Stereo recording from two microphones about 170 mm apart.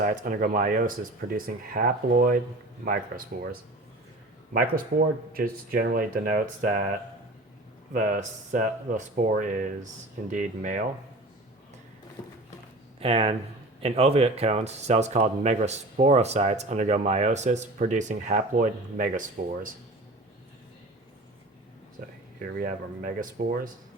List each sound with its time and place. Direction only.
0.0 s speech: 55° right (ahead or behind)
7.9 s speech: 50° right (ahead or behind)
13.0 s speech: 35° right (ahead or behind)
22.0 s speech: 60° right (ahead or behind)